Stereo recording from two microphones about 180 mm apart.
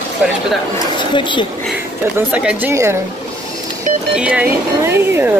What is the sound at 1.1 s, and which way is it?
Speech, 25° left (ahead or behind).